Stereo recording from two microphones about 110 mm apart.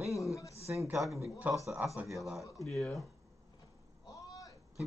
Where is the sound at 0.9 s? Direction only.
Centre (ahead or behind).